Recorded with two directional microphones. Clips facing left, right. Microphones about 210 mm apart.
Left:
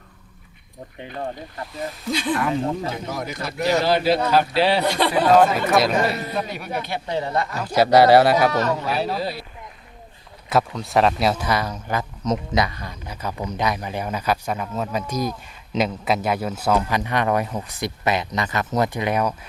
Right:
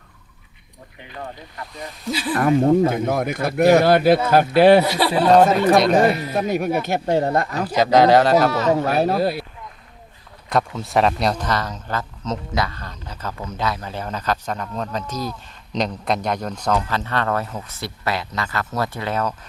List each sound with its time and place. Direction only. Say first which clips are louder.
2.0 s speech: even; 5° right (ahead or behind)
2.3 s speech: right 9 dB; 50° right (ahead or behind)
4.8 s speech: right 1 dB; 5° right (ahead or behind)
6.0 s speech: right 5 dB; 50° right (ahead or behind)
7.8 s speech: left 1 dB; 10° left (ahead or behind)
8.4 s speech: right 1 dB; 5° right (ahead or behind)
8.7 s speech: right 5 dB; 50° right (ahead or behind)
10.5 s speech: even; centre (ahead or behind)